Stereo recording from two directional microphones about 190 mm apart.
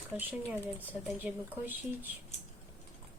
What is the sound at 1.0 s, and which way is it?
A woman's voice, 10° right (ahead or behind).